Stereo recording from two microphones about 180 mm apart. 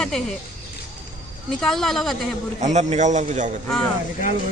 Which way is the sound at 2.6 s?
40° right (ahead or behind).